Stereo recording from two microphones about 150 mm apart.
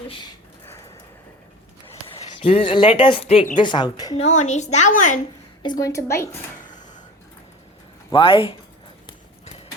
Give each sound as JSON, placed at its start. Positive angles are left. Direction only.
{"t": 2.1, "sound": "a woman's voice", "side_deg": 40}
{"t": 4.2, "sound": "a woman's voice", "side_deg": 50}
{"t": 5.6, "sound": "a woman's voice", "side_deg": 25}
{"t": 8.1, "sound": "speech", "side_deg": 35}